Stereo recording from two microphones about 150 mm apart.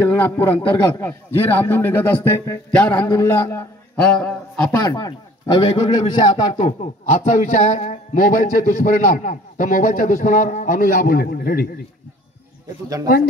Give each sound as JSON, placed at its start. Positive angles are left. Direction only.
{"t": 0.0, "sound": "a man's voice", "side_deg": 15}
{"t": 4.8, "sound": "speech", "side_deg": 30}
{"t": 6.6, "sound": "a man's voice", "side_deg": 50}